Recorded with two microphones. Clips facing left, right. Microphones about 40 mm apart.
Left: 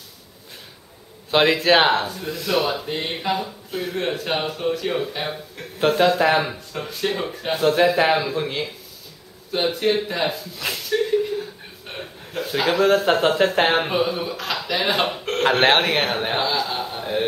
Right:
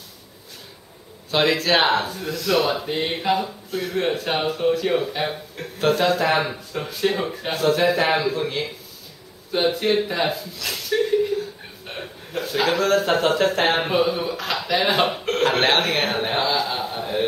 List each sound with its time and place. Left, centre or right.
1.3 s speech: left
2.0 s speech: centre
2.4 s speech: centre
2.7 s speech: centre
6.0 s speech: centre
6.3 s speech: centre
7.5 s speech: centre
9.5 s speech: centre
10.9 s a sound: centre
12.4 s speech: centre
13.7 s speech: centre
15.6 s a sound: centre